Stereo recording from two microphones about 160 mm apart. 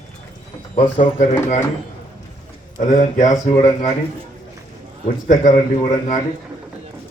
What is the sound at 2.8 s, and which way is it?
Speech, 50° left (ahead or behind).